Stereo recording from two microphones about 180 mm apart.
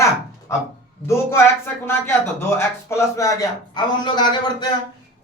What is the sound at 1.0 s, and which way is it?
Speech, 15° left (ahead or behind).